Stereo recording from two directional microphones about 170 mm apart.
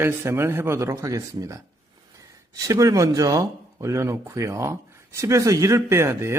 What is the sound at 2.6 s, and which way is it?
Speech, 20° right (ahead or behind).